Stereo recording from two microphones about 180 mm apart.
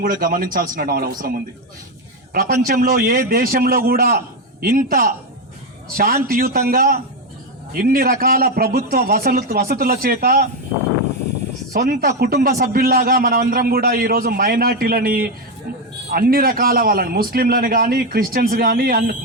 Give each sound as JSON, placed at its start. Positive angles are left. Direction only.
{"t": 0.0, "sound": "a man's voice", "side_deg": -50}
{"t": 2.6, "sound": "a man's voice", "side_deg": -55}
{"t": 11.7, "sound": "a man's voice", "side_deg": -55}